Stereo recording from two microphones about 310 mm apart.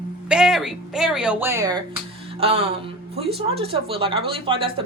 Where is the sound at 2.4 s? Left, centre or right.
Centre.